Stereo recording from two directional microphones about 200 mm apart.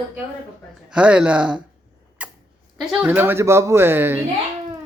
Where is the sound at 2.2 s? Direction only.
5° right (ahead or behind).